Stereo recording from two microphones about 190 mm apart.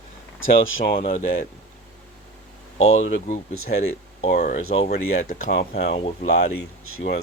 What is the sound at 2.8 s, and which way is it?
Speech, 35° left (ahead or behind).